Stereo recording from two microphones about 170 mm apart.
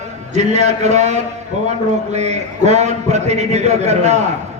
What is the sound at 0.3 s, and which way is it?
A man's voice, 40° right (ahead or behind).